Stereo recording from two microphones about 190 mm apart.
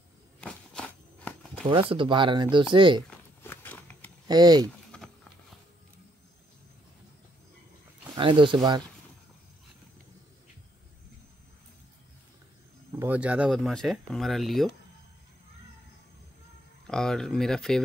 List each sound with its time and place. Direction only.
0.4 s walk: 5° left (ahead or behind)
1.7 s speech: 30° right (ahead or behind)
3.1 s a sound: 10° left (ahead or behind)
4.3 s speech: 20° right (ahead or behind)
4.9 s a sound: 5° left (ahead or behind)
8.2 s speech: 25° right (ahead or behind)
13.0 s speech: 5° right (ahead or behind)
16.8 s speech: 5° left (ahead or behind)